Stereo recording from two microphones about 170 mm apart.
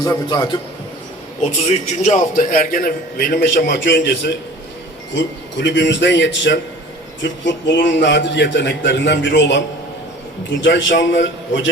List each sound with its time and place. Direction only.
0.0 s a man's voice: 25° left (ahead or behind)
2.0 s a man's voice: 55° left (ahead or behind)
3.7 s speech: 90° left